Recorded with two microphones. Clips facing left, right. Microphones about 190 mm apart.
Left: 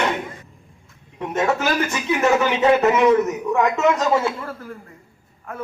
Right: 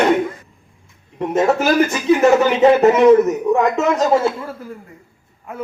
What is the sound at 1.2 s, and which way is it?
Speech, 35° right (ahead or behind).